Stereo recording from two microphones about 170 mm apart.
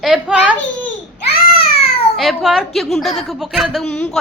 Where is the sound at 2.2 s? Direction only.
Centre (ahead or behind).